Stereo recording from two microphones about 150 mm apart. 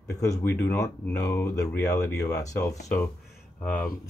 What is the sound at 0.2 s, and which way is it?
Speech, 20° left (ahead or behind).